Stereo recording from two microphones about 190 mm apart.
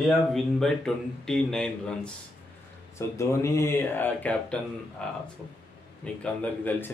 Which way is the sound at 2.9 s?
15° left (ahead or behind).